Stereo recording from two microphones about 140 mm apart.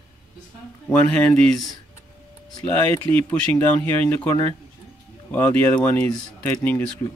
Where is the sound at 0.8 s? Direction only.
10° left (ahead or behind).